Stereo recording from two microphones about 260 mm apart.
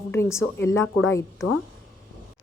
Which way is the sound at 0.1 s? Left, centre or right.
Centre.